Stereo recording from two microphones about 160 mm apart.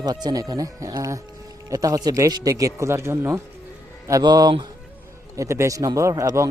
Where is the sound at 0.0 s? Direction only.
25° right (ahead or behind).